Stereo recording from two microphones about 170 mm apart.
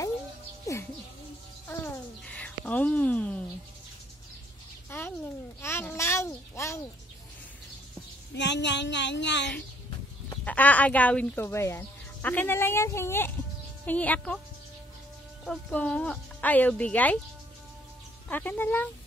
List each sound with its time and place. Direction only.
1.7 s bird: 10° left (ahead or behind)
4.8 s a sound: 10° left (ahead or behind)
8.4 s speech: 90° left
10.4 s speech: 10° left (ahead or behind)
15.4 s speech: 5° left (ahead or behind)
18.3 s speech: 10° left (ahead or behind)